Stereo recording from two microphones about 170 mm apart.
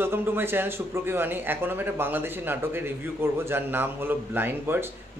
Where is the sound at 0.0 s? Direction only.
15° right (ahead or behind).